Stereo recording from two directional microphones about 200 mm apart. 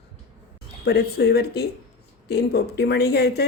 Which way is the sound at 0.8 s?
55° left (ahead or behind).